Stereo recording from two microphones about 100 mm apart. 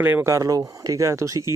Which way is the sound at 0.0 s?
20° right (ahead or behind).